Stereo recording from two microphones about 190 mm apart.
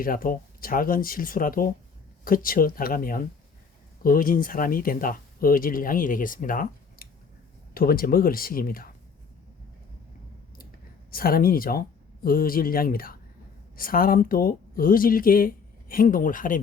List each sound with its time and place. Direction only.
0.0 s speech: 50° left (ahead or behind)
11.1 s speech: 50° left (ahead or behind)